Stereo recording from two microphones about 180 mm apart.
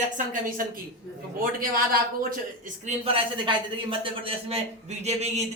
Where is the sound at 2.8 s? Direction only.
30° right (ahead or behind).